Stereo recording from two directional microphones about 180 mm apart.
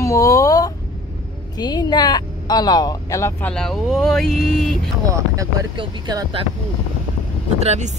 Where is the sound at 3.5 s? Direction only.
Centre (ahead or behind).